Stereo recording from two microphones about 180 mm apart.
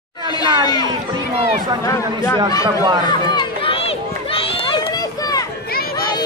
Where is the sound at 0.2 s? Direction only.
25° left (ahead or behind).